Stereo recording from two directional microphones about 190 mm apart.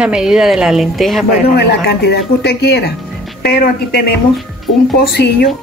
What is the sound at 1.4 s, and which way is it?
Speech, 55° left (ahead or behind).